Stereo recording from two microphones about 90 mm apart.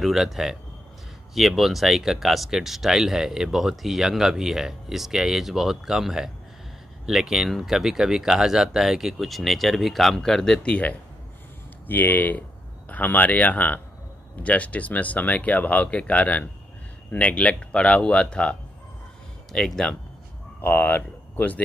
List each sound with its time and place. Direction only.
0.0 s speech: 5° right (ahead or behind)
20.6 s speech: 20° left (ahead or behind)